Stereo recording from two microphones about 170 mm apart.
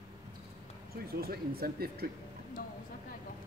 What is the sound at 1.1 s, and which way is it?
Speech, 65° right (ahead or behind).